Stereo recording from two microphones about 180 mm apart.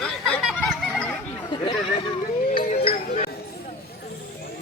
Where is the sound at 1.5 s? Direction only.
25° left (ahead or behind).